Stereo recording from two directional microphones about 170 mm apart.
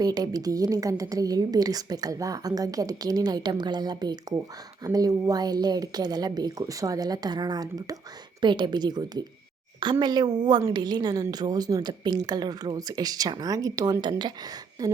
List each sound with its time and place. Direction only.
0.0 s a woman's voice: 20° right (ahead or behind)